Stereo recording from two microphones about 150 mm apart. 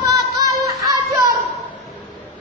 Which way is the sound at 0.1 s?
25° right (ahead or behind).